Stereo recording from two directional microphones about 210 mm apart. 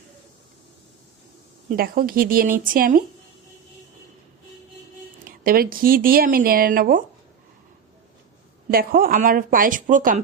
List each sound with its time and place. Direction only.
1.7 s speech: 45° right (ahead or behind)
5.4 s speech: 45° right (ahead or behind)
8.7 s speech: 45° right (ahead or behind)